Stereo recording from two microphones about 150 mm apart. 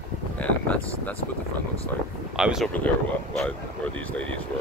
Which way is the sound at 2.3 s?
5° right (ahead or behind).